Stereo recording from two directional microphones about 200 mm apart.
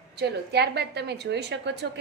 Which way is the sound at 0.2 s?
55° right (ahead or behind).